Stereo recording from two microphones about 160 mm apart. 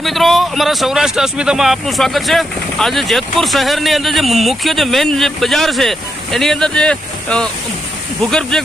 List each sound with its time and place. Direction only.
0.0 s speech: centre (ahead or behind)